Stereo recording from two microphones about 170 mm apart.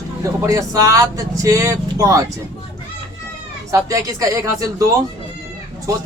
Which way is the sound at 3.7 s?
20° right (ahead or behind).